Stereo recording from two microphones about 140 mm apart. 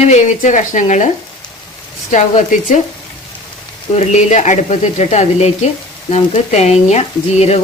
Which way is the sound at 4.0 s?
55° left (ahead or behind).